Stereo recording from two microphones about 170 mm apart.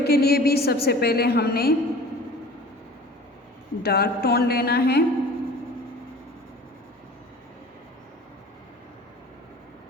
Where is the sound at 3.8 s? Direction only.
65° left (ahead or behind).